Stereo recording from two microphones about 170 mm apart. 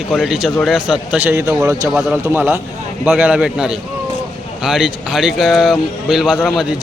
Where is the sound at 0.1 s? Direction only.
5° right (ahead or behind).